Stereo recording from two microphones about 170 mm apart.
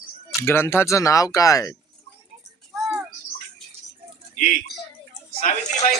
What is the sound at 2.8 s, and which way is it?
Bird, 5° right (ahead or behind).